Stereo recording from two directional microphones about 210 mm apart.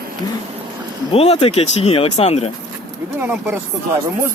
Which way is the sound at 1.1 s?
30° left (ahead or behind).